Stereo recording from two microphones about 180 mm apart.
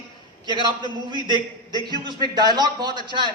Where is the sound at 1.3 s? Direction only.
25° left (ahead or behind).